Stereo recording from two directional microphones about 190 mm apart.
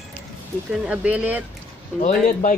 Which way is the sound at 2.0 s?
40° left (ahead or behind).